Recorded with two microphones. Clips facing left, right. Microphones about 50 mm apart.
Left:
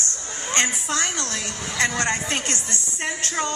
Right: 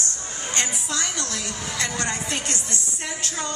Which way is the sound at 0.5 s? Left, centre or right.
Left.